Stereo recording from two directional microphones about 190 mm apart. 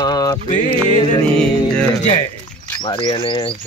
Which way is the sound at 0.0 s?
20° left (ahead or behind).